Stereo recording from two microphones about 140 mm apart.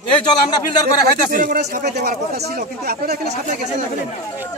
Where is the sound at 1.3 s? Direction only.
80° right.